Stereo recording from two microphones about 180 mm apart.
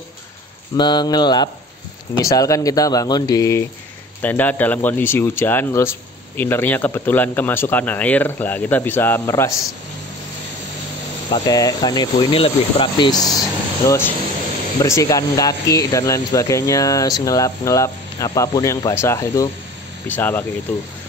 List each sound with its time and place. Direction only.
0.7 s speech: 25° left (ahead or behind)
11.2 s speech: 25° left (ahead or behind)